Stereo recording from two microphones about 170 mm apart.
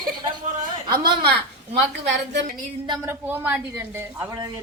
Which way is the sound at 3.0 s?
10° right (ahead or behind).